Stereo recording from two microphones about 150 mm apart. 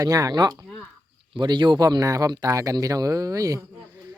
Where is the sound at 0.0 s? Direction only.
25° right (ahead or behind).